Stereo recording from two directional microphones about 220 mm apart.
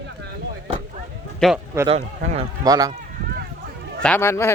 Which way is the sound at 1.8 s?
25° right (ahead or behind).